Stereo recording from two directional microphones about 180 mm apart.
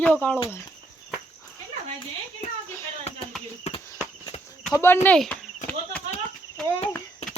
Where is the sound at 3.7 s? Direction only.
40° left (ahead or behind).